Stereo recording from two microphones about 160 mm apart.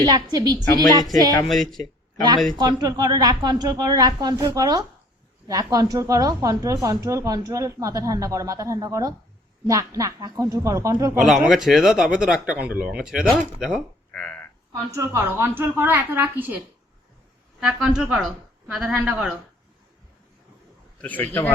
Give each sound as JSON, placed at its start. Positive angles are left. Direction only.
{"t": 0.0, "sound": "speech", "side_deg": -25}
{"t": 1.5, "sound": "speech", "side_deg": 0}
{"t": 2.6, "sound": "speech", "side_deg": -25}
{"t": 11.2, "sound": "speech", "side_deg": 0}
{"t": 13.6, "sound": "a sound", "side_deg": -5}
{"t": 14.9, "sound": "a woman's voice", "side_deg": -15}
{"t": 17.6, "sound": "speech", "side_deg": -5}
{"t": 21.0, "sound": "a man's voice", "side_deg": 10}